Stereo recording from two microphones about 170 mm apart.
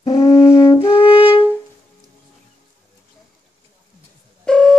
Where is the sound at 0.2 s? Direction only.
15° left (ahead or behind).